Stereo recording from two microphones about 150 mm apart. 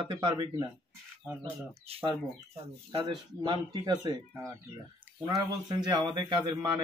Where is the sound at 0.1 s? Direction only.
30° right (ahead or behind).